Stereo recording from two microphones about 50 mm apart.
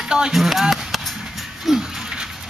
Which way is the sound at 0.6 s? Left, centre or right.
Centre.